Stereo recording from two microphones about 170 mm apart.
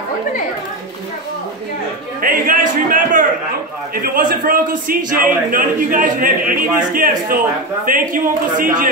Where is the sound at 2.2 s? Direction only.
55° right (ahead or behind).